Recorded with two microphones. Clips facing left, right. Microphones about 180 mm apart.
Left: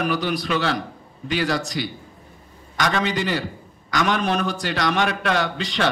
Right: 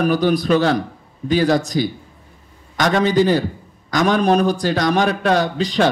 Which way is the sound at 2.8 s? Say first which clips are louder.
Right 7 dB; 45° right (ahead or behind).